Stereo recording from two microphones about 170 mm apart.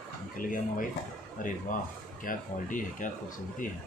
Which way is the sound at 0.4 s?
55° left (ahead or behind).